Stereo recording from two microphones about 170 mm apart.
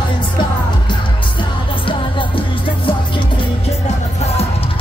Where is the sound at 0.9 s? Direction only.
30° left (ahead or behind).